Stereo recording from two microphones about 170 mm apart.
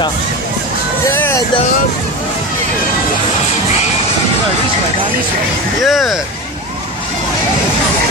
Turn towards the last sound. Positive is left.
turn(degrees=0)  # may be behind; listen again after turning